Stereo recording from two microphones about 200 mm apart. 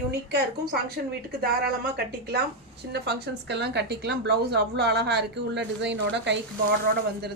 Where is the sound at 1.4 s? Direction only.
55° right (ahead or behind).